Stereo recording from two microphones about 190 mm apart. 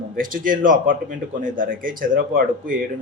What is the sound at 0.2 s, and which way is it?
Speech, 45° right (ahead or behind).